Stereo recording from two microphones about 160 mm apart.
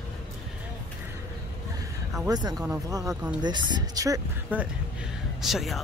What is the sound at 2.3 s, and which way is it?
Speech, 25° right (ahead or behind).